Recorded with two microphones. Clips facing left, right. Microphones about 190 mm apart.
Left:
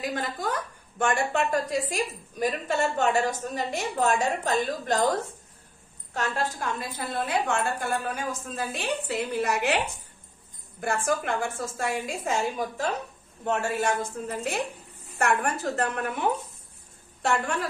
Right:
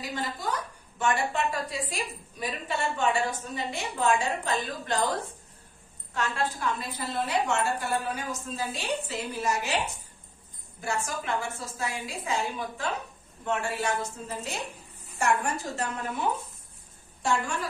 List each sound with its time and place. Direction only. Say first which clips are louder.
0.0 s a woman's voice: left 3 dB; 55° left (ahead or behind)
6.1 s a woman's voice: left 1 dB; 45° left (ahead or behind); by 9.8 s 60° left (ahead or behind)
10.8 s a woman's voice: left 5 dB; 55° left (ahead or behind)